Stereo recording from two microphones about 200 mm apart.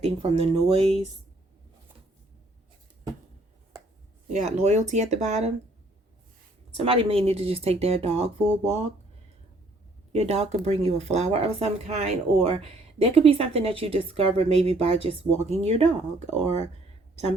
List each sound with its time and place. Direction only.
0.0 s a woman's voice: 25° right (ahead or behind)
4.3 s speech: 35° right (ahead or behind)
6.7 s a woman's voice: 25° right (ahead or behind)
10.1 s a woman's voice: 30° right (ahead or behind)